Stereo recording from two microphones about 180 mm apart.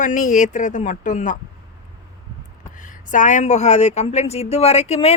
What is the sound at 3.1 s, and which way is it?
Speech, 45° left (ahead or behind).